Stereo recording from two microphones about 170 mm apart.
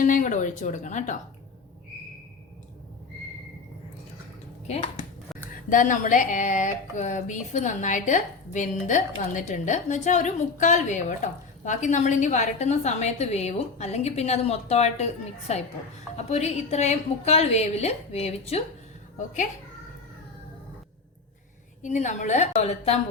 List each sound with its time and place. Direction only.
0.0 s speech: 50° left (ahead or behind)
5.6 s a woman's voice: 50° left (ahead or behind)
21.8 s speech: 45° left (ahead or behind)